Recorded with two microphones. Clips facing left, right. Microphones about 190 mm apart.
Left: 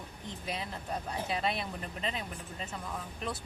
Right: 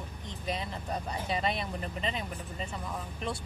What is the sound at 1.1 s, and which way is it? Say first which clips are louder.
Speech: right 1 dB; centre (ahead or behind).